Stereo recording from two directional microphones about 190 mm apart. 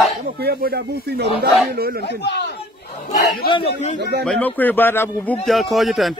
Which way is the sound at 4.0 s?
60° right (ahead or behind).